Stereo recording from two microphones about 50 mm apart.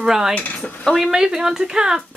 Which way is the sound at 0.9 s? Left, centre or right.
Centre.